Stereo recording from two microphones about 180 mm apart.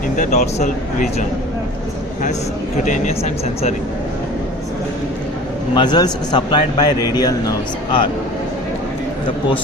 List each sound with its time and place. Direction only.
0.2 s a man's voice: 40° left (ahead or behind)
2.8 s a man's voice: 45° left (ahead or behind)
5.7 s a man's voice: 25° left (ahead or behind)